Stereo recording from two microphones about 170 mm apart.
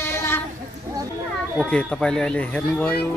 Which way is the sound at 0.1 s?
15° left (ahead or behind).